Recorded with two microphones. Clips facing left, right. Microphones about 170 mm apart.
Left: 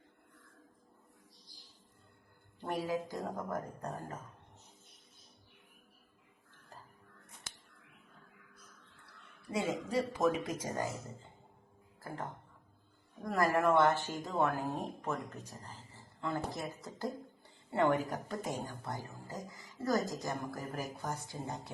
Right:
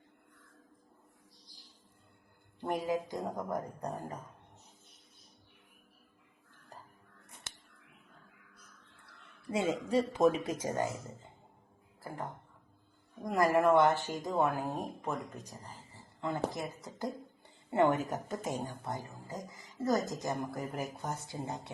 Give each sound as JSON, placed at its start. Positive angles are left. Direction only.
{"t": 2.6, "sound": "speech", "side_deg": -15}
{"t": 9.5, "sound": "a woman's voice", "side_deg": -30}
{"t": 12.0, "sound": "a woman's voice", "side_deg": -10}